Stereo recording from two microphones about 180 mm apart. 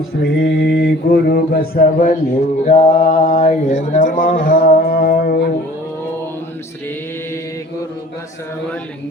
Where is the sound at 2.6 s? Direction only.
35° left (ahead or behind); by 5.5 s 55° left (ahead or behind).